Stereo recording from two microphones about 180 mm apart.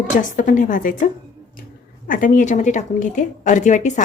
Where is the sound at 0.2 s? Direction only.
45° left (ahead or behind).